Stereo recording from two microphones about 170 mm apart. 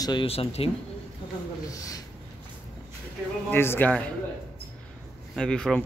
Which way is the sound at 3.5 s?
15° left (ahead or behind).